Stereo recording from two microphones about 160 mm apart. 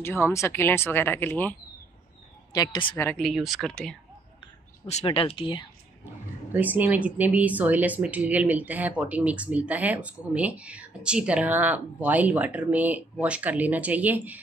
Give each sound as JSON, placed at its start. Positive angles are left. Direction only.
{"t": 0.0, "sound": "speech", "side_deg": 15}
{"t": 2.5, "sound": "speech", "side_deg": 25}
{"t": 3.2, "sound": "speech", "side_deg": 0}
{"t": 5.0, "sound": "speech", "side_deg": 35}
{"t": 6.5, "sound": "speech", "side_deg": -10}